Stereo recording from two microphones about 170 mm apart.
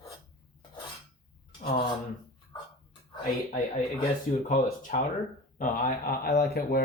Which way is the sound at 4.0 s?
50° left (ahead or behind).